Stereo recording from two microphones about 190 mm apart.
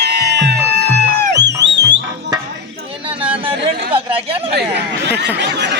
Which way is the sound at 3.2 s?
30° right (ahead or behind).